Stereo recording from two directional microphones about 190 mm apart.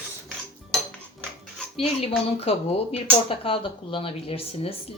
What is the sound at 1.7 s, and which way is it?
Speech, 30° left (ahead or behind).